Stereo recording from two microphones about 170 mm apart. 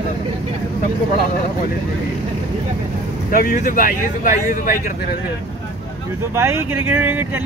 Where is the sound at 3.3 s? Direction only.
55° left (ahead or behind).